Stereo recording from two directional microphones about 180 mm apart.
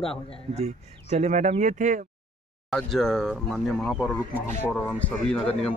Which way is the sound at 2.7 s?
Centre (ahead or behind).